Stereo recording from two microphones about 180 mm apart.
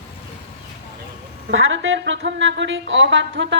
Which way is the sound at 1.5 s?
90° right.